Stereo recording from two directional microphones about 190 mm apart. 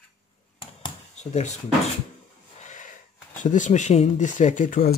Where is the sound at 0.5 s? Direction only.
30° left (ahead or behind).